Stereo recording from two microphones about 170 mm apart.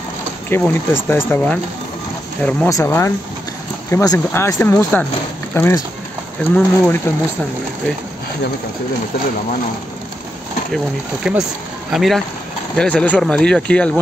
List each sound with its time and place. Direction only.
0.5 s speech: 10° left (ahead or behind)
2.7 s speech: 15° left (ahead or behind)
11.3 s speech: centre (ahead or behind)